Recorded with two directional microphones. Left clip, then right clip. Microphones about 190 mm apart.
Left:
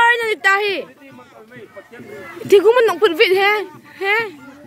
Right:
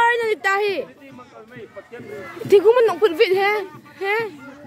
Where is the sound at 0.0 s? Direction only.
Centre (ahead or behind).